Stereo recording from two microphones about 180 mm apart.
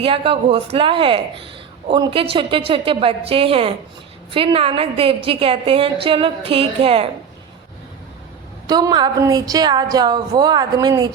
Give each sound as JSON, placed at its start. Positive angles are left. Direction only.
{"t": 0.0, "sound": "a woman's voice", "side_deg": -30}
{"t": 8.6, "sound": "a woman's voice", "side_deg": -20}